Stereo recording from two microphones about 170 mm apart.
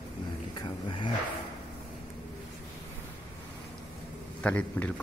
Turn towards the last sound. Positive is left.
turn(degrees=10)  # may be behind; listen again after turning